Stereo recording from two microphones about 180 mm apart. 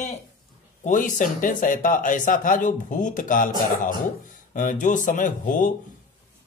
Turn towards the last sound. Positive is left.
turn(degrees=45)  # may be behind; listen again after turning